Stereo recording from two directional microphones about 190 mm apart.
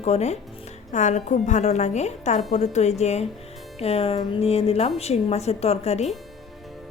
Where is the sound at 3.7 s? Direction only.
30° left (ahead or behind).